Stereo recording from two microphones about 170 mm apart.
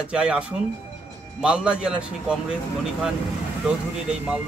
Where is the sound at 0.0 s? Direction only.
5° right (ahead or behind).